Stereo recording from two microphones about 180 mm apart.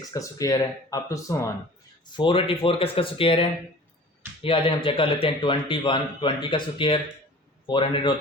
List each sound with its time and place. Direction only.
0.1 s a man's voice: 20° left (ahead or behind)
2.1 s a man's voice: 30° left (ahead or behind)